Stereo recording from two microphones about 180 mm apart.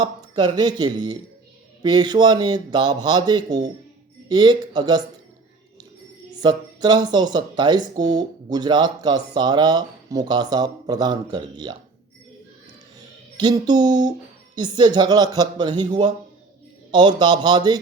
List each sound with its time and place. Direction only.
0.0 s speech: 25° right (ahead or behind)
6.4 s speech: 25° right (ahead or behind)
13.3 s speech: 25° right (ahead or behind)